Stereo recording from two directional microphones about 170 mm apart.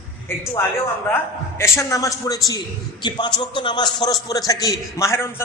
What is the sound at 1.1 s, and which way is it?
A man's voice, 15° left (ahead or behind).